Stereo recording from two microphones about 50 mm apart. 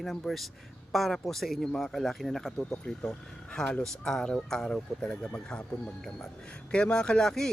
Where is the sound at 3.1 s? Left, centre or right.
Centre.